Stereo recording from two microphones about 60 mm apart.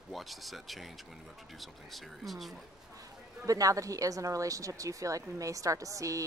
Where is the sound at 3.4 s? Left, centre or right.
Right.